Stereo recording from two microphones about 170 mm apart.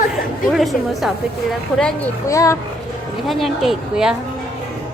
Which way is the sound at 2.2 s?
20° left (ahead or behind).